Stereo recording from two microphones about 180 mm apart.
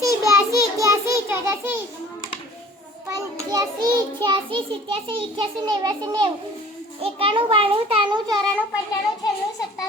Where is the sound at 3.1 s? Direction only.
20° right (ahead or behind).